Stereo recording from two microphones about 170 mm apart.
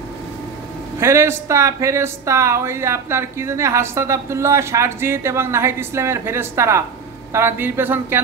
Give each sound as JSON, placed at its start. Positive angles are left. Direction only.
{"t": 0.9, "sound": "speech", "side_deg": -15}